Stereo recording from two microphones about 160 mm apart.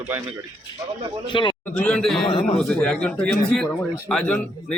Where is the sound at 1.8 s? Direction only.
5° left (ahead or behind).